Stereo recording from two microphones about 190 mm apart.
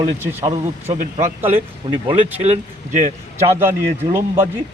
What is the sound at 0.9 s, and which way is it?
A man's voice, 35° right (ahead or behind).